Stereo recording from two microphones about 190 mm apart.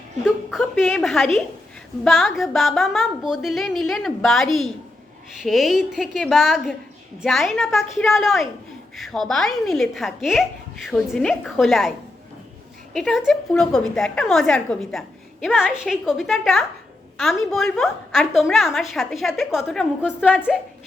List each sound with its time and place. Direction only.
0.3 s a woman's voice: centre (ahead or behind)